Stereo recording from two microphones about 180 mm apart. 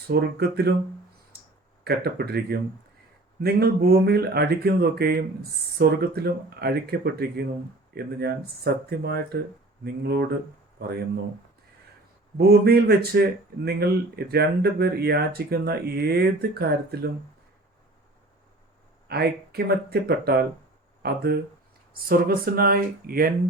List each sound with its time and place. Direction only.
0.1 s speech: 60° right (ahead or behind)
1.3 s clicking: 60° right (ahead or behind)
1.8 s speech: 60° right (ahead or behind)
12.4 s speech: 60° right (ahead or behind)
19.0 s speech: 60° right (ahead or behind)